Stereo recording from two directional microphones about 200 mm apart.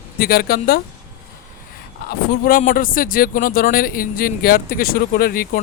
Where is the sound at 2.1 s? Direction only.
45° left (ahead or behind).